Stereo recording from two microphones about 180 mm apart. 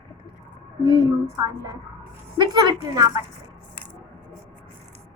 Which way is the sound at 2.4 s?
25° right (ahead or behind).